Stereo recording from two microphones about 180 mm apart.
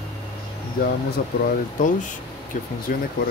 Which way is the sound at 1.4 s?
50° left (ahead or behind).